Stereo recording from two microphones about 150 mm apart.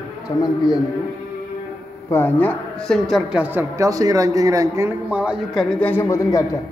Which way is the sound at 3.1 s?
Centre (ahead or behind).